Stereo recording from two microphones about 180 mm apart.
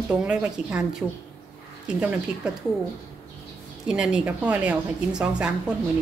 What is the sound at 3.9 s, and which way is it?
A woman's voice, 5° right (ahead or behind).